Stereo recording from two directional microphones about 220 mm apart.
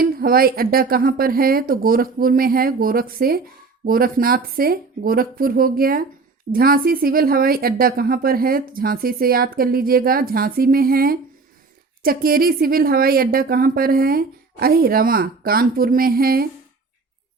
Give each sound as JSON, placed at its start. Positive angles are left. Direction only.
{"t": 0.0, "sound": "a woman's voice", "side_deg": -45}